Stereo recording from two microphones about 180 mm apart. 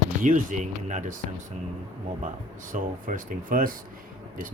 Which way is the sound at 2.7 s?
50° right (ahead or behind).